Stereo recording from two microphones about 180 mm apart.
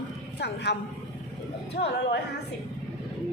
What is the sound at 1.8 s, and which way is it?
Speech, 70° left (ahead or behind).